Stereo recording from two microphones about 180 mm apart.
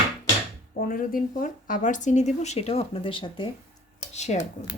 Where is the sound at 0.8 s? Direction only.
55° left (ahead or behind); by 3.5 s 30° left (ahead or behind).